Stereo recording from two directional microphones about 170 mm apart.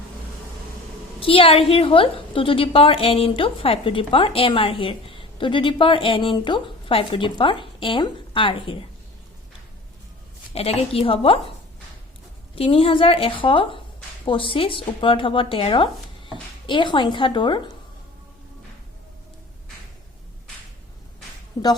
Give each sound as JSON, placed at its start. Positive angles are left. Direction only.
{"t": 1.2, "sound": "a woman's voice", "side_deg": 30}
{"t": 10.5, "sound": "a woman's voice", "side_deg": 35}
{"t": 12.5, "sound": "a woman's voice", "side_deg": 35}